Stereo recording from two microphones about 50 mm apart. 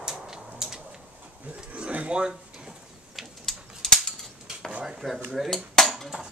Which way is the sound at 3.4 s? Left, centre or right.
Centre.